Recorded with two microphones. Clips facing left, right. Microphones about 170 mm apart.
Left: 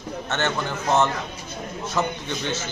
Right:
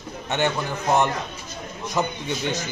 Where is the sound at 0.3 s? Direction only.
15° right (ahead or behind).